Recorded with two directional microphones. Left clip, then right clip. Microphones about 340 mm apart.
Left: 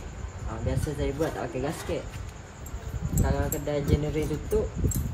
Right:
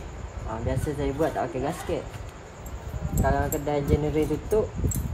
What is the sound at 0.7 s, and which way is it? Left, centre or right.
Speech, centre.